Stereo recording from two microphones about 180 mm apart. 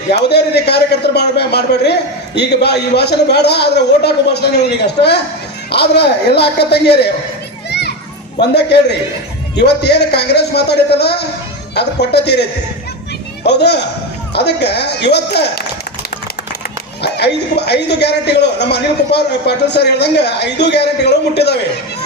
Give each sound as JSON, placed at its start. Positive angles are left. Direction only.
{"t": 0.1, "sound": "speech", "side_deg": 65}
{"t": 5.7, "sound": "speech", "side_deg": 65}
{"t": 7.7, "sound": "children playing", "side_deg": 65}
{"t": 8.4, "sound": "speech", "side_deg": 70}
{"t": 17.0, "sound": "speech", "side_deg": 70}